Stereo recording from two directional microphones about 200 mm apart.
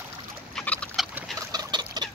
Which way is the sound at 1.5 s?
20° right (ahead or behind).